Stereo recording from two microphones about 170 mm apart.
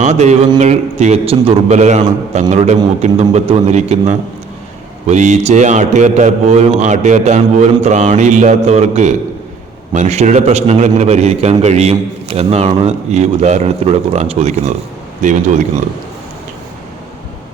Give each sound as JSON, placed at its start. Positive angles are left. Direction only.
{"t": 0.0, "sound": "a man's voice", "side_deg": -40}